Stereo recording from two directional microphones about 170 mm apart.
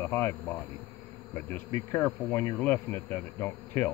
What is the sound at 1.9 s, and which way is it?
Speech, 15° left (ahead or behind).